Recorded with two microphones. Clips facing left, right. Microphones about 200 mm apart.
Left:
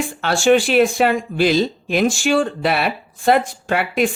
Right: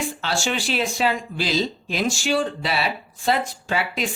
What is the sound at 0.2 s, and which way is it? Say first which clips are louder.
Speech: left 11 dB; 55° left (ahead or behind).